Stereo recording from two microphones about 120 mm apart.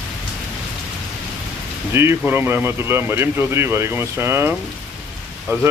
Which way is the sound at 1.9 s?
20° right (ahead or behind).